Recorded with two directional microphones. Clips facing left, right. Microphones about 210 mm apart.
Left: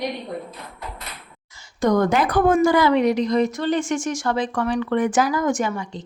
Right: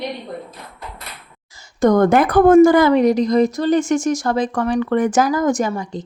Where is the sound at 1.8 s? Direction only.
50° right (ahead or behind).